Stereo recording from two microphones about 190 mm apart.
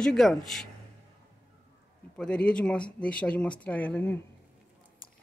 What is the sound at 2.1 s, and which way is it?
Speech, 5° left (ahead or behind).